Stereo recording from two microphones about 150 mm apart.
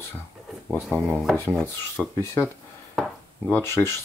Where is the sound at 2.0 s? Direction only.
15° left (ahead or behind).